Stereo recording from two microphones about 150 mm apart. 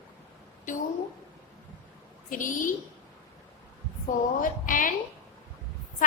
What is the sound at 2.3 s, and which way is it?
Speech, 65° left (ahead or behind).